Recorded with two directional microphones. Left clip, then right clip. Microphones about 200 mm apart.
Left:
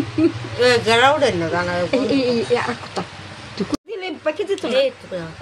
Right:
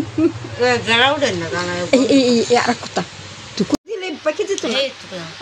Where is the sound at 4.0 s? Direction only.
25° right (ahead or behind).